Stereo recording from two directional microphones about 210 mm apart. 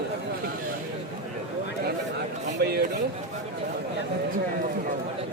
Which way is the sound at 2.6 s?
50° right (ahead or behind).